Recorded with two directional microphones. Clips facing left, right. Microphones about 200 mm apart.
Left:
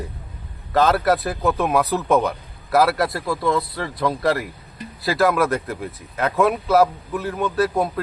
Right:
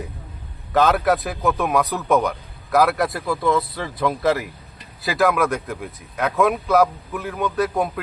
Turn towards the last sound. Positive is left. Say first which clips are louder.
# left 1 dB
turn(degrees=0)  # may be behind; listen again after turning